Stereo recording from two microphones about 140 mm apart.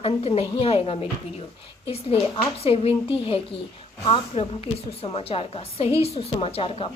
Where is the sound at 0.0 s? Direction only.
45° left (ahead or behind).